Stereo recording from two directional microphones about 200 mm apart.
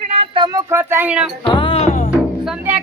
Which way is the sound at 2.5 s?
5° right (ahead or behind).